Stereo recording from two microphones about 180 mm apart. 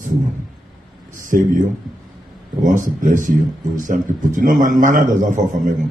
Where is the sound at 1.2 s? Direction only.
50° right (ahead or behind).